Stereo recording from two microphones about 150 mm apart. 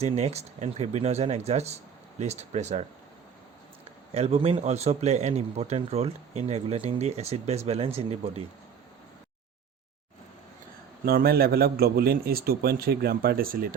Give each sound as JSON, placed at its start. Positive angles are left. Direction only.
{"t": 0.0, "sound": "speech", "side_deg": -45}
{"t": 4.1, "sound": "speech", "side_deg": -40}
{"t": 11.0, "sound": "a man's voice", "side_deg": -90}